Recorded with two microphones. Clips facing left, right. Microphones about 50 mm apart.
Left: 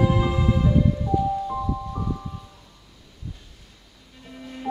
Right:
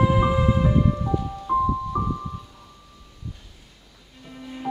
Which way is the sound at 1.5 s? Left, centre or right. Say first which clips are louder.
Right 7 dB; right.